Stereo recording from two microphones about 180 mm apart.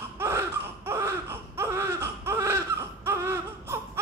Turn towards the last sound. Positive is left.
turn(degrees=-15)  # may be behind; listen again after turning